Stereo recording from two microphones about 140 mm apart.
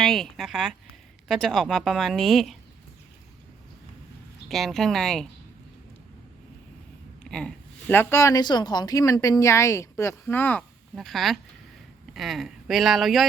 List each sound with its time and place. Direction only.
0.0 s speech: centre (ahead or behind)
4.4 s speech: centre (ahead or behind)
7.3 s a woman's voice: 5° left (ahead or behind)
10.9 s speech: centre (ahead or behind)